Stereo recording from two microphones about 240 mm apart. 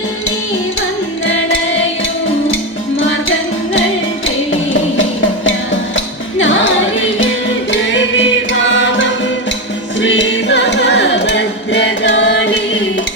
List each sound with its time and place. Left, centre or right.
6.4 s music: left